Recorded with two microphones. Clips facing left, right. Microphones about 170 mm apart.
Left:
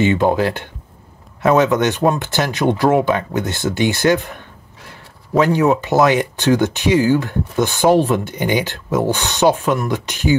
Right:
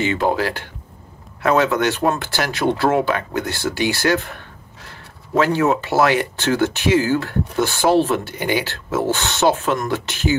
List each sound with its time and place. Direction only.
0.0 s speech: 20° left (ahead or behind)
5.4 s speech: 15° left (ahead or behind)